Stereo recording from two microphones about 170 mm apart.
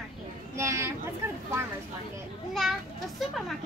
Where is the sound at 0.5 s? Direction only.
15° right (ahead or behind).